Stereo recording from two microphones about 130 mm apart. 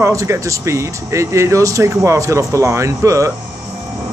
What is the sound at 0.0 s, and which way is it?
Speech, 25° right (ahead or behind).